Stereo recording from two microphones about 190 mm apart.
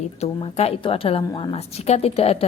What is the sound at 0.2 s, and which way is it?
A woman's voice, 30° left (ahead or behind).